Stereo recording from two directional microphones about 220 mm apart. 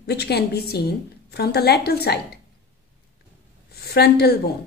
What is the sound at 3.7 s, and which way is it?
Speech, 45° left (ahead or behind).